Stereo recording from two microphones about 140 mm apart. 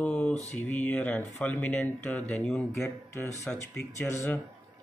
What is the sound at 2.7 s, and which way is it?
Speech, 20° left (ahead or behind).